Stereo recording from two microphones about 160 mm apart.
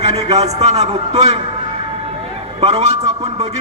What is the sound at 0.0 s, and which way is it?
A man's voice, 40° right (ahead or behind).